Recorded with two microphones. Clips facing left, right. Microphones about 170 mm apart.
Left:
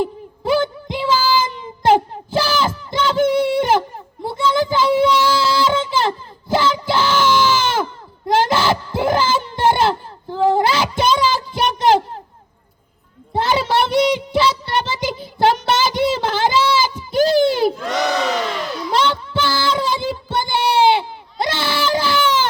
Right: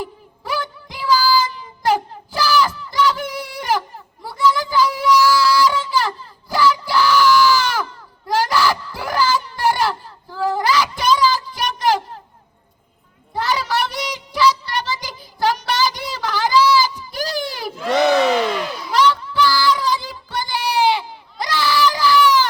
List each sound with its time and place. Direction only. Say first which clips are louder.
0.0 s child singing: left 9 dB; 25° left (ahead or behind)
8.3 s a sound: left 2 dB; 25° left (ahead or behind)
13.3 s child singing: left 4 dB; 25° left (ahead or behind)
18.9 s child singing: right 2 dB; 25° left (ahead or behind)